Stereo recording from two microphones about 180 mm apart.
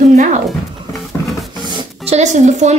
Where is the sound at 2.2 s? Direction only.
40° right (ahead or behind).